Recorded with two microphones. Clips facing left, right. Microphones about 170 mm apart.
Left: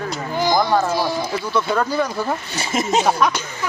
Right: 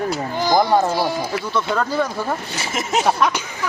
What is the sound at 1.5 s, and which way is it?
Speech, 5° left (ahead or behind).